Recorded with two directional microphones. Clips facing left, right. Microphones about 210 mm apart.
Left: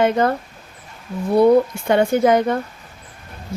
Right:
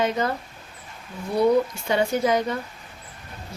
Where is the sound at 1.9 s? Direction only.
55° left (ahead or behind).